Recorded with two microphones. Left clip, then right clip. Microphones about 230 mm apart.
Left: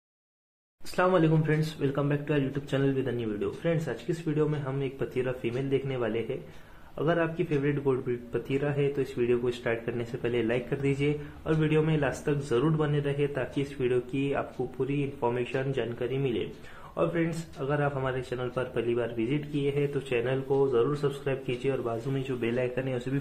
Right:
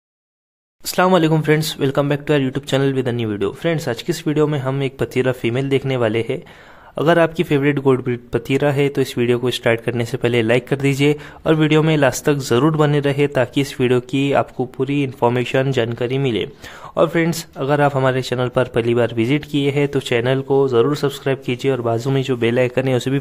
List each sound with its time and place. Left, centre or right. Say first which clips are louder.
0.9 s speech: right 10 dB; right